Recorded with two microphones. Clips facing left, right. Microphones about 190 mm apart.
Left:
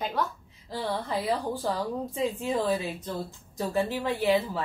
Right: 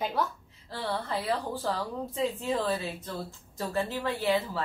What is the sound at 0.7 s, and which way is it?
A woman's voice, 15° left (ahead or behind).